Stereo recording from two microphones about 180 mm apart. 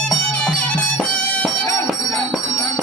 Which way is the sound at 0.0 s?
5° left (ahead or behind).